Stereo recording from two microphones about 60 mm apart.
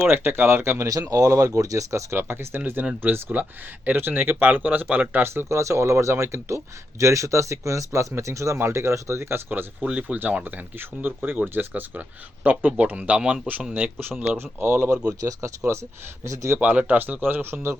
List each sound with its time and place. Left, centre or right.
0.1 s speech: right
0.9 s speech: right
2.1 s speech: right
5.2 s speech: right
9.5 s speech: right
9.9 s speech: right
13.7 s speech: right
14.8 s speech: centre
15.2 s speech: right
16.6 s speech: right